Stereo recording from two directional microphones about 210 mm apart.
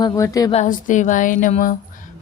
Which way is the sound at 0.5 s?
35° left (ahead or behind).